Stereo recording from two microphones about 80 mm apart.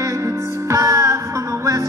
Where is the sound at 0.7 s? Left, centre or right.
Right.